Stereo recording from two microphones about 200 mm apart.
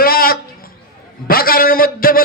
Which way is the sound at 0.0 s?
45° left (ahead or behind).